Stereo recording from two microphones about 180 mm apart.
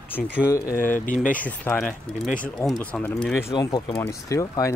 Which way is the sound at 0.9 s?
45° left (ahead or behind).